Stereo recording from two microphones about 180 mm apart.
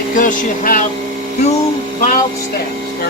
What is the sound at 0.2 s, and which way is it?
Music, 50° left (ahead or behind).